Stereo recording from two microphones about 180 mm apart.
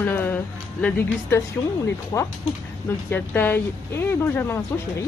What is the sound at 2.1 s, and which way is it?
Speech, 20° left (ahead or behind).